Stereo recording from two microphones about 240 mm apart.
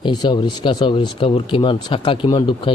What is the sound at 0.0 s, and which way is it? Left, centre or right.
Speech, centre.